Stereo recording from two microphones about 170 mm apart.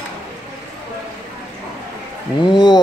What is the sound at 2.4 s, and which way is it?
Speech, 25° left (ahead or behind).